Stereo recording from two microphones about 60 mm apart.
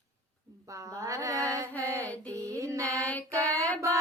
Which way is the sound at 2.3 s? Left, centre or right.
Right.